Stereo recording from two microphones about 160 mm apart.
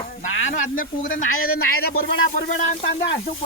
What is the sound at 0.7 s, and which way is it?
Speech, 55° left (ahead or behind).